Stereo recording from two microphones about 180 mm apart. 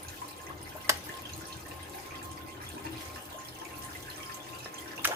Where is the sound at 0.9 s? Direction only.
15° right (ahead or behind).